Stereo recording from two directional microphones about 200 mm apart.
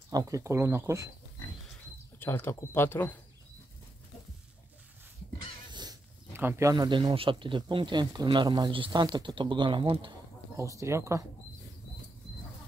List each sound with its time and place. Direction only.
0.1 s speech: 15° right (ahead or behind)
2.1 s speech: 10° left (ahead or behind)
5.7 s speech: 20° right (ahead or behind)